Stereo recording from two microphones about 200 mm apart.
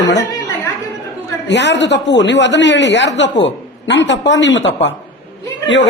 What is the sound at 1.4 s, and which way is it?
Speech, 60° left (ahead or behind).